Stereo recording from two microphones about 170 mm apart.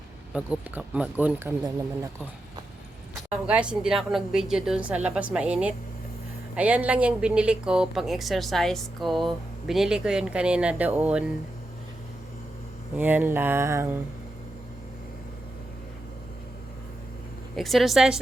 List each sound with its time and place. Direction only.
0.3 s speech: 5° right (ahead or behind)
3.4 s speech: 5° right (ahead or behind)
13.0 s speech: 10° right (ahead or behind)
17.6 s speech: centre (ahead or behind)